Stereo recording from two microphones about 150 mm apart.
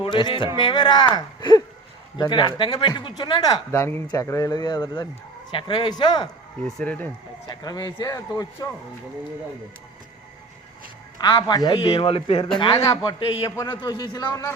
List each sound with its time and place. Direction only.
0.0 s speech: 30° left (ahead or behind)
6.7 s speech: 5° left (ahead or behind)
7.4 s speech: 25° left (ahead or behind)
11.2 s speech: 25° left (ahead or behind)
12.5 s speech: 25° left (ahead or behind)